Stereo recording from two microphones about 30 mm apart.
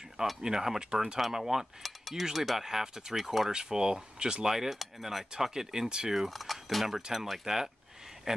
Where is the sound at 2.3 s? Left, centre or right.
Centre.